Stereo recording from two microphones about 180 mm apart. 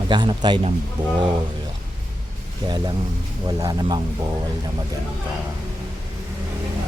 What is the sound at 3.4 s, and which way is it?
Speech, 20° right (ahead or behind).